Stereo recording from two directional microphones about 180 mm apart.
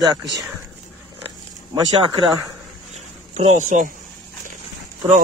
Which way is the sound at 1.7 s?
20° right (ahead or behind).